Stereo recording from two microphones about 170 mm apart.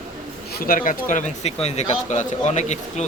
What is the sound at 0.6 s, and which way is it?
Speech, 55° left (ahead or behind).